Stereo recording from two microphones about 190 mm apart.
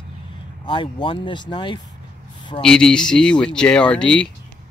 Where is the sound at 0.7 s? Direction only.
25° left (ahead or behind).